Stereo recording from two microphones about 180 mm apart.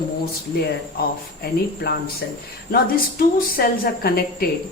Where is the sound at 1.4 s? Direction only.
60° left (ahead or behind).